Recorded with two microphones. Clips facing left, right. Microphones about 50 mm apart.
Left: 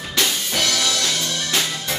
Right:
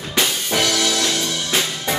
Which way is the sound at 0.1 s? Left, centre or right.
Centre.